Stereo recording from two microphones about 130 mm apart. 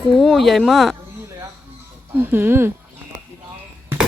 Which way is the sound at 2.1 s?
15° right (ahead or behind).